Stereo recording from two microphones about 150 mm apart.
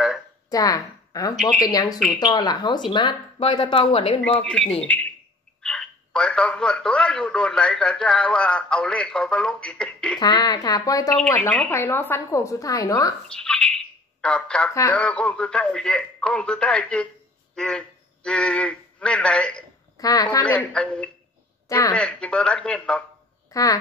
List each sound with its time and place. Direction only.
0.5 s a woman's voice: 25° left (ahead or behind)
1.3 s speech: centre (ahead or behind)
1.6 s a woman's voice: 25° left (ahead or behind)
4.4 s speech: 5° left (ahead or behind)
10.1 s a woman's voice: 30° left (ahead or behind)
11.3 s a woman's voice: 10° left (ahead or behind)
13.3 s speech: 5° left (ahead or behind)
14.7 s a woman's voice: 20° left (ahead or behind)
15.0 s speech: 10° left (ahead or behind)
20.0 s speech: 25° left (ahead or behind)
20.4 s speech: 10° left (ahead or behind)
21.6 s a woman's voice: 20° left (ahead or behind)
21.9 s speech: 5° left (ahead or behind)
23.5 s speech: 25° left (ahead or behind)